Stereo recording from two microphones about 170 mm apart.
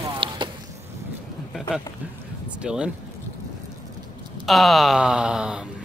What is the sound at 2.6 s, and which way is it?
Speech, 5° right (ahead or behind).